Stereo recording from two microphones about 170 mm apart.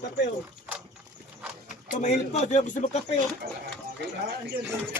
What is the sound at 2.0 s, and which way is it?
Speech, 45° left (ahead or behind).